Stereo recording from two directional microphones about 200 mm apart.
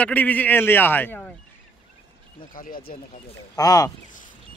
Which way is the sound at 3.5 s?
20° left (ahead or behind).